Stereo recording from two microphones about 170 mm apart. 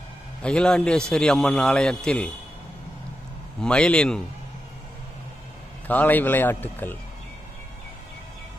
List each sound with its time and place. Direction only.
0.4 s a man's voice: 5° left (ahead or behind)
3.6 s a man's voice: 5° left (ahead or behind)
5.9 s a man's voice: 10° left (ahead or behind)